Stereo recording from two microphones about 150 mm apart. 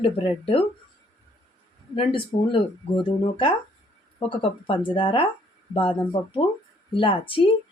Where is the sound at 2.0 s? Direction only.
35° left (ahead or behind).